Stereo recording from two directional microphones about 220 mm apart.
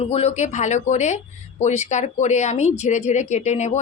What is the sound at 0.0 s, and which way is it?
Speech, 30° left (ahead or behind).